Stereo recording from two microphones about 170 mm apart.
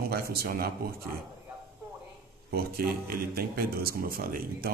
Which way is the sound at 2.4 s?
65° right (ahead or behind).